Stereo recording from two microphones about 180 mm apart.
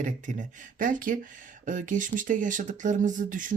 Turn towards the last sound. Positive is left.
turn(degrees=-45)  # may be behind; listen again after turning